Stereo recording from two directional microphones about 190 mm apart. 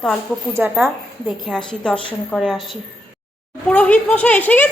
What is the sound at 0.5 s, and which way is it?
A woman's voice, 5° right (ahead or behind).